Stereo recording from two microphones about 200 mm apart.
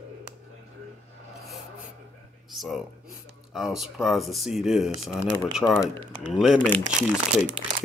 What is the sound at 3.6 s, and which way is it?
Speech, centre (ahead or behind).